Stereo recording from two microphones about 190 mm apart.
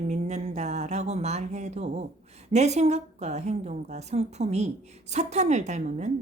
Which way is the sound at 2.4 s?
35° right (ahead or behind).